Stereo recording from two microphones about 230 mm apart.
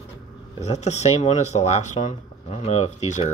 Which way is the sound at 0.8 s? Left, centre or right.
Left.